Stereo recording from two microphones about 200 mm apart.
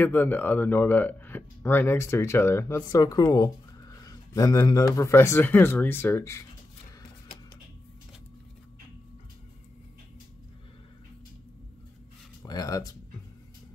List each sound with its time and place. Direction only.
0.0 s speech: 10° left (ahead or behind)
12.4 s speech: 20° left (ahead or behind)